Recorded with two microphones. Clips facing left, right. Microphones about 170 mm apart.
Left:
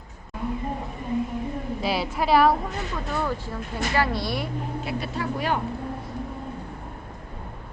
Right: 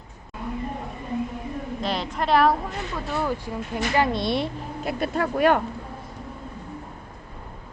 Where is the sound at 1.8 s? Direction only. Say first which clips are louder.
Left 1 dB; 5° left (ahead or behind).